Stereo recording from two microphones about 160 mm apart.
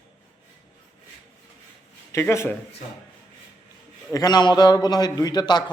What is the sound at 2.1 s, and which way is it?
Speech, 15° left (ahead or behind).